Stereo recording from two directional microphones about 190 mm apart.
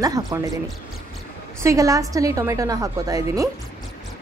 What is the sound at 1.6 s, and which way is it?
Speech, 15° right (ahead or behind).